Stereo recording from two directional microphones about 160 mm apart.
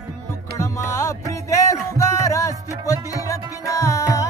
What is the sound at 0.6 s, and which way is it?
Music, 20° left (ahead or behind).